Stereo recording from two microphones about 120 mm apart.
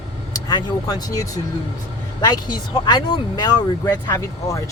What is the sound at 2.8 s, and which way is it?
Speech, 35° left (ahead or behind).